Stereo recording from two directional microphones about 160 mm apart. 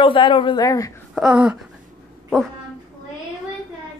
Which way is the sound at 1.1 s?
5° right (ahead or behind).